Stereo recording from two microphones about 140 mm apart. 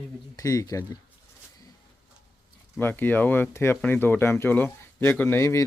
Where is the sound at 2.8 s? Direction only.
15° left (ahead or behind).